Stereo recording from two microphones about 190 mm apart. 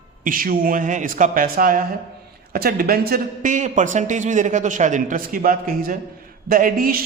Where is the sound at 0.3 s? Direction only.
50° right (ahead or behind).